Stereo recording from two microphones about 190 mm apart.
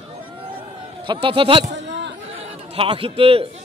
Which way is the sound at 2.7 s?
30° right (ahead or behind).